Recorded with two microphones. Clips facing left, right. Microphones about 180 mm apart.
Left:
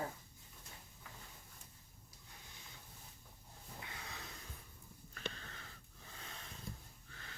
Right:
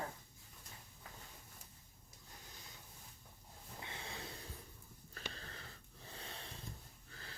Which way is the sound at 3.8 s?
25° right (ahead or behind).